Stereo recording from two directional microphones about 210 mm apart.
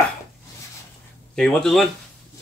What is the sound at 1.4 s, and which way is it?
Speech, centre (ahead or behind).